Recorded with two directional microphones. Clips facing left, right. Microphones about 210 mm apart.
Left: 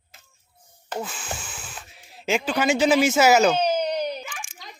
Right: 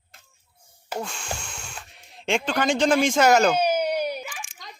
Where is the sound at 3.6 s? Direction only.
10° right (ahead or behind).